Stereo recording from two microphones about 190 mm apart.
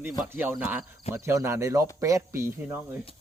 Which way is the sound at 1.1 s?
15° right (ahead or behind).